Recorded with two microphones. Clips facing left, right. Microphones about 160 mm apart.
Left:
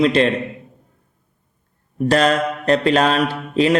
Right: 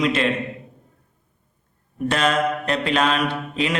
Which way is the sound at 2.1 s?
40° left (ahead or behind).